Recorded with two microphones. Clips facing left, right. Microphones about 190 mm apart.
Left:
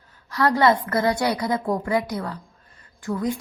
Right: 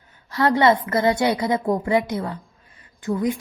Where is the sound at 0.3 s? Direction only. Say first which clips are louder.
Right 1 dB; 25° right (ahead or behind).